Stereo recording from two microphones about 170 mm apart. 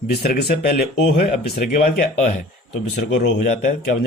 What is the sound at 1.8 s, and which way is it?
Speech, 55° left (ahead or behind).